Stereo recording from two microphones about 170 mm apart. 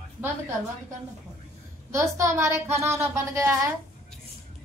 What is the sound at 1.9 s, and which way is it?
A woman's voice, 15° right (ahead or behind).